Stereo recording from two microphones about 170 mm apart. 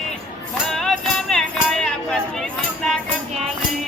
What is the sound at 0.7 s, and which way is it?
Music, 5° left (ahead or behind).